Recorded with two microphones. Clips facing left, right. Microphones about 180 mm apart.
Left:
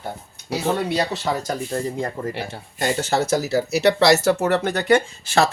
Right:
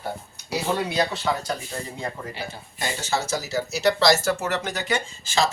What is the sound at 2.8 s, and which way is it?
Speech, 55° left (ahead or behind).